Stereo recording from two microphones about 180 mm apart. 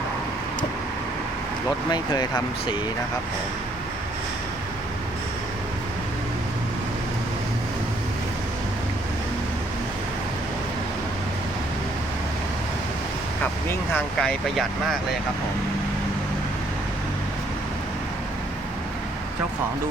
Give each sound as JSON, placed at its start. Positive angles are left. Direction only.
{"t": 1.9, "sound": "speech", "side_deg": 25}
{"t": 13.9, "sound": "speech", "side_deg": 5}